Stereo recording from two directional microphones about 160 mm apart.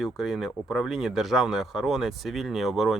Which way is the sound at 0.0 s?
Centre (ahead or behind).